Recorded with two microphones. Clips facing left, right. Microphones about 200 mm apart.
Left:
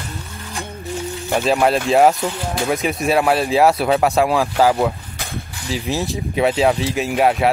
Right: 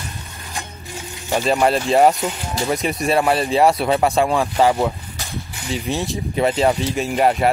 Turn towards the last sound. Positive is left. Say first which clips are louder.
# left 1 dB
turn(degrees=0)  # may be behind; listen again after turning